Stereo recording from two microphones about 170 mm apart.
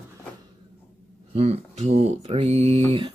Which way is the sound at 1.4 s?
40° right (ahead or behind).